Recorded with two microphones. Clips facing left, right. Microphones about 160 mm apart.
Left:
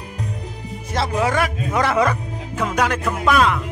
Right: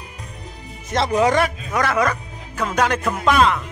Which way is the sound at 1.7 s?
25° left (ahead or behind).